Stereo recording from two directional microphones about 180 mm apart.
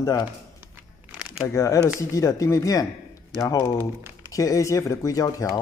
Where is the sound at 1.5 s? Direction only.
15° left (ahead or behind).